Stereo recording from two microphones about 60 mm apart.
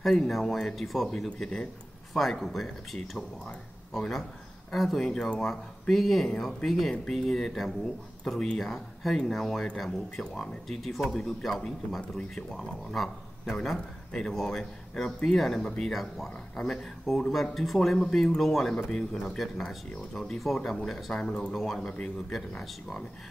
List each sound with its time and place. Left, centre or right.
0.0 s speech: centre
12.0 s speech: centre
12.4 s speech: centre
15.9 s speech: centre